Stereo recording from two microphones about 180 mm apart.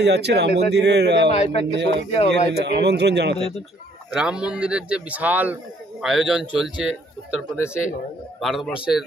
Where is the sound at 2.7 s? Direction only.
70° right (ahead or behind).